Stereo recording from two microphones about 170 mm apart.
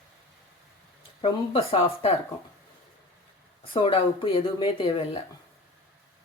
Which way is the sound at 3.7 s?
30° left (ahead or behind).